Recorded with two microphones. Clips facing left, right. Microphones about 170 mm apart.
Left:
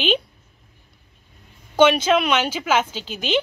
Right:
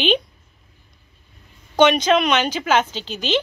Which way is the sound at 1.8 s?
5° left (ahead or behind).